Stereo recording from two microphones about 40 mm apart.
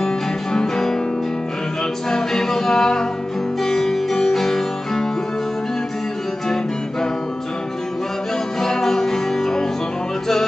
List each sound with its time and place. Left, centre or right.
0.0 s music: centre
2.0 s music: centre
8.5 s music: centre